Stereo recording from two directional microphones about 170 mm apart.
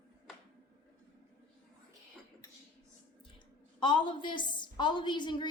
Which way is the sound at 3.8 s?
25° left (ahead or behind).